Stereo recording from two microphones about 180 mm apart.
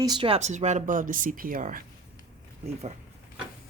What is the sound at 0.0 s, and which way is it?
Speech, 25° right (ahead or behind).